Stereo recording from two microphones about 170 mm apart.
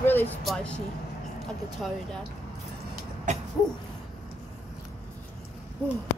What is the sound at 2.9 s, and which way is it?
Vehicle, 45° right (ahead or behind).